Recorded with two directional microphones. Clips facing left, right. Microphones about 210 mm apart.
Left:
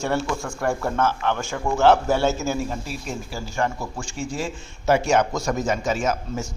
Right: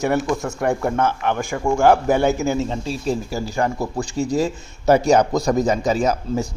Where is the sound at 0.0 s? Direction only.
15° right (ahead or behind).